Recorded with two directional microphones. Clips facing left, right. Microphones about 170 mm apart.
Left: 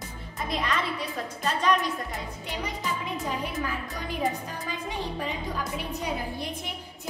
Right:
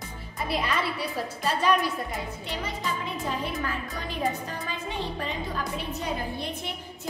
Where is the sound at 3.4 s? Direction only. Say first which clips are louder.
Even; 15° left (ahead or behind).